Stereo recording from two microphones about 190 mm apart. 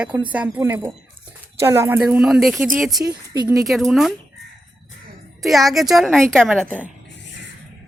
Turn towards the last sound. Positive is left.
turn(degrees=5)  # may be behind; listen again after turning